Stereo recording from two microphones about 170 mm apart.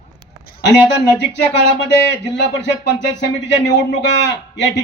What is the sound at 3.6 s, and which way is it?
Speech, 90° left.